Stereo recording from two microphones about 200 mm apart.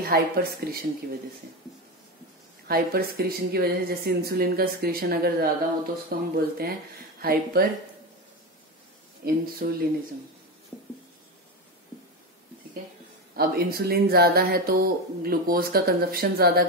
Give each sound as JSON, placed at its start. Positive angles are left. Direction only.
{"t": 0.0, "sound": "speech", "side_deg": -50}
{"t": 2.7, "sound": "speech", "side_deg": -50}
{"t": 9.2, "sound": "speech", "side_deg": -50}
{"t": 13.4, "sound": "speech", "side_deg": -50}